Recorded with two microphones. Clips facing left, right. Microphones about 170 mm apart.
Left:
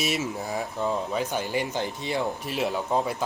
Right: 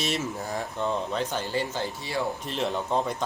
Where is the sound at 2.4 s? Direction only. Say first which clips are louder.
Left 1 dB; 10° left (ahead or behind).